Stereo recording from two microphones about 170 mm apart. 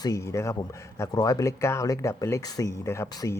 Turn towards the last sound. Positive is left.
turn(degrees=15)  # may be behind; listen again after turning